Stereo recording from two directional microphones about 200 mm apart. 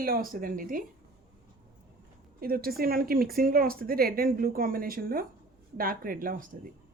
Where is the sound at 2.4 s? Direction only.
50° right (ahead or behind).